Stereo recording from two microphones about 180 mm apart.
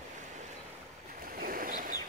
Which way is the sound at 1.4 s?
50° right (ahead or behind).